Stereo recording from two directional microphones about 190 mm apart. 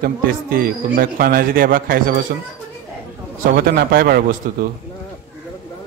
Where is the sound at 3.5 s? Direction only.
50° right (ahead or behind).